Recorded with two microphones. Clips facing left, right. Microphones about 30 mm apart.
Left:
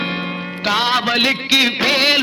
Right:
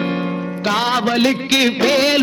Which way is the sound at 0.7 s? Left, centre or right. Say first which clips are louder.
Left 1 dB; left.